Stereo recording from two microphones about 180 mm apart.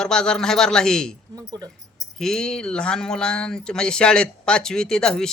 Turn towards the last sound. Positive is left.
turn(degrees=5)  # may be behind; listen again after turning